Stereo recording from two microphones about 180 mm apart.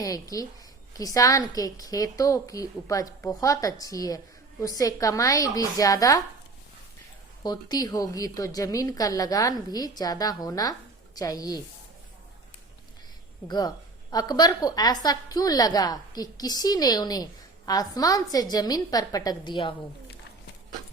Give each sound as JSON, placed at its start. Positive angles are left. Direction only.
{"t": 0.0, "sound": "a woman's voice", "side_deg": 20}
{"t": 7.4, "sound": "a woman's voice", "side_deg": 20}
{"t": 13.5, "sound": "a woman's voice", "side_deg": 20}